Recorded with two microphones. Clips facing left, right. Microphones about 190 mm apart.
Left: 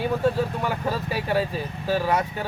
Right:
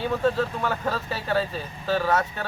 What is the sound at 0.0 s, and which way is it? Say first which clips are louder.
Speech: left 1 dB; 10° left (ahead or behind).